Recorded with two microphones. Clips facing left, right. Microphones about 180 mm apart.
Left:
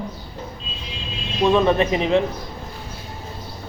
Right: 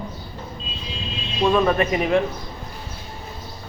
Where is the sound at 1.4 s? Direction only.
10° left (ahead or behind).